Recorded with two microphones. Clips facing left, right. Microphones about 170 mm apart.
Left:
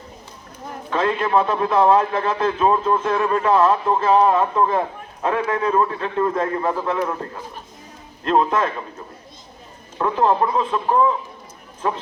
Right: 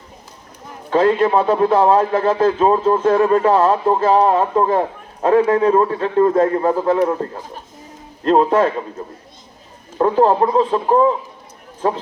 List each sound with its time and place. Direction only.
0.9 s a man's voice: 35° right (ahead or behind)
10.0 s a man's voice: 35° right (ahead or behind)